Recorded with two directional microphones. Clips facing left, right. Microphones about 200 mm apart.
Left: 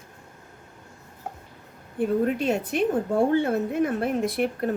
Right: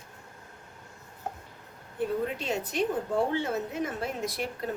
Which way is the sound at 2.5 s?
55° left (ahead or behind).